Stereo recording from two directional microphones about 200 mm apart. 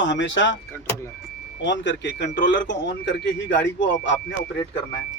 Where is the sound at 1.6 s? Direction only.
65° left (ahead or behind).